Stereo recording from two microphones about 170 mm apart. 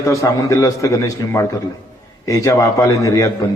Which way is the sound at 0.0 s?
15° left (ahead or behind).